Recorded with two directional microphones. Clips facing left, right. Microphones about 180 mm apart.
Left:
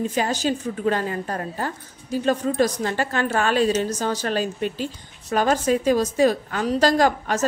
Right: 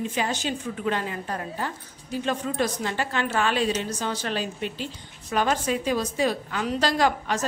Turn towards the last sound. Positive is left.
turn(degrees=45)  # may be behind; listen again after turning